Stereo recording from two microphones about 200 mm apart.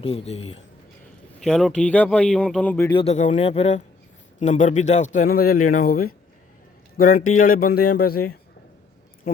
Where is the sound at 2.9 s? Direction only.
30° left (ahead or behind).